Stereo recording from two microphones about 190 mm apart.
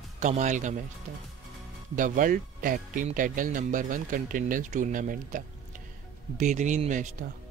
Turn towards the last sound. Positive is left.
turn(degrees=-40)  # may be behind; listen again after turning